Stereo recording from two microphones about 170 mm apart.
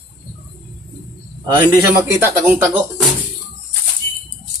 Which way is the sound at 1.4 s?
20° right (ahead or behind).